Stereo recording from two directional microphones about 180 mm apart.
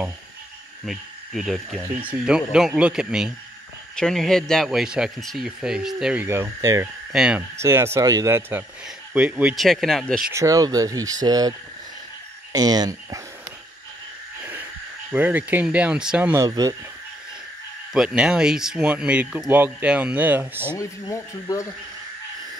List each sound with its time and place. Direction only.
0.8 s speech: centre (ahead or behind)
6.2 s speech: 15° right (ahead or behind)
7.1 s speech: 5° right (ahead or behind)
7.5 s speech: 15° right (ahead or behind); by 10.2 s 5° left (ahead or behind)
10.3 s speech: 20° right (ahead or behind)
12.5 s speech: 20° right (ahead or behind)
15.0 s speech: 10° right (ahead or behind)
16.4 s speech: 20° right (ahead or behind)
17.9 s speech: 5° right (ahead or behind)
20.7 s speech: 20° left (ahead or behind)